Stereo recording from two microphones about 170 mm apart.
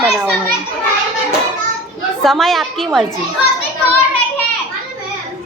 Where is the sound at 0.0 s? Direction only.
5° right (ahead or behind).